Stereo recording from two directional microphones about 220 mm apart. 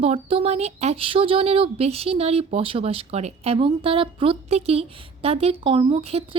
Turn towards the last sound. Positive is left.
turn(degrees=-25)  # may be behind; listen again after turning